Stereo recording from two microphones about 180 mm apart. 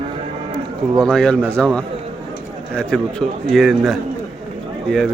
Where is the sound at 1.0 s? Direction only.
5° left (ahead or behind).